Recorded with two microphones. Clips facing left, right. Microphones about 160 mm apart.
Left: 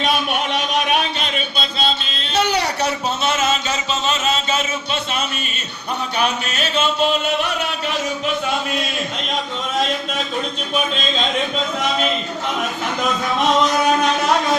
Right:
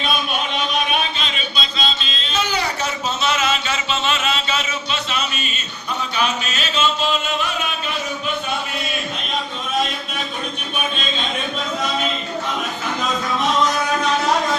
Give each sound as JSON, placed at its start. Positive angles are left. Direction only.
{"t": 0.0, "sound": "a sound", "side_deg": 75}
{"t": 5.1, "sound": "a man's voice", "side_deg": 55}
{"t": 6.1, "sound": "music", "side_deg": 55}